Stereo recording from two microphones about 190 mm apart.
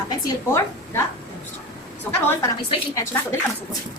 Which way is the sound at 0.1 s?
15° left (ahead or behind).